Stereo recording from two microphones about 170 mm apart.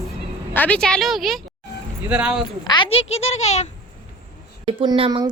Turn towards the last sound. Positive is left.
turn(degrees=-25)  # may be behind; listen again after turning